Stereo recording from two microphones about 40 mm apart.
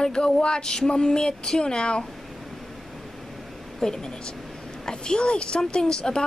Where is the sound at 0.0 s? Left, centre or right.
Left.